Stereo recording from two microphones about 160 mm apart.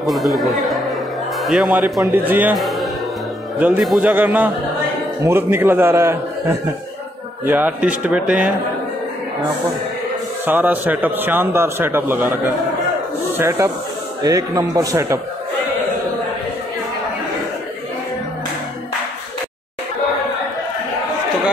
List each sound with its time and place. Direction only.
0.0 s a man's voice: centre (ahead or behind)
3.5 s a man's voice: 10° right (ahead or behind)
10.4 s a man's voice: 10° right (ahead or behind)